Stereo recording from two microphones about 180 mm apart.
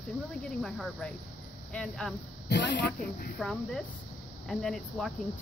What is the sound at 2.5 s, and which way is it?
Speech, 75° left (ahead or behind).